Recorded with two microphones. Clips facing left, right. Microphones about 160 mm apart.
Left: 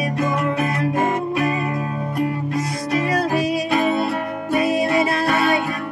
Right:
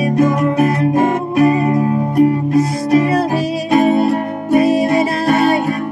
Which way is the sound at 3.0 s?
30° right (ahead or behind).